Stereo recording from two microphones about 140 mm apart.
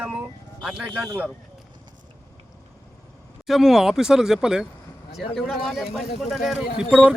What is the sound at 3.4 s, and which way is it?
Speech, centre (ahead or behind).